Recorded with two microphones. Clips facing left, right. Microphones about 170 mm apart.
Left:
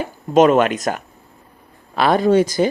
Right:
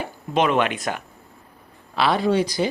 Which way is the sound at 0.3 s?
40° left (ahead or behind).